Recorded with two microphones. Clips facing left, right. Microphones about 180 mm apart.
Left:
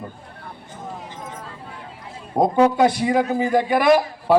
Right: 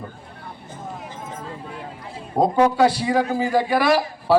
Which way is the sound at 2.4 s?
20° left (ahead or behind).